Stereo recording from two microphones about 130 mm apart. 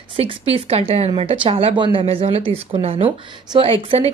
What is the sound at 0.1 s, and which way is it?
Speech, 50° right (ahead or behind).